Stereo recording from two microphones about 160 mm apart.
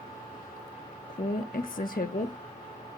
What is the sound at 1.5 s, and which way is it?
Speech, 60° left (ahead or behind).